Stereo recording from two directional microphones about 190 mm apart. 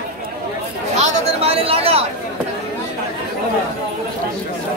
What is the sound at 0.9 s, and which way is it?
Speech, 35° right (ahead or behind).